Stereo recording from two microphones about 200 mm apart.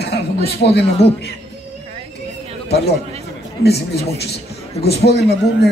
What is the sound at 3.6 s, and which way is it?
A man's voice, 55° left (ahead or behind).